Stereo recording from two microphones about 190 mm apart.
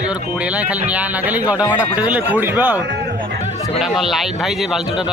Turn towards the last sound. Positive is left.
turn(degrees=0)  # may be behind; listen again after turning